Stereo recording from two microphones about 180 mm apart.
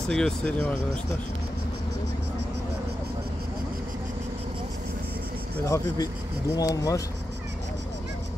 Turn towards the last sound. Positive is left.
turn(degrees=20)  # may be behind; listen again after turning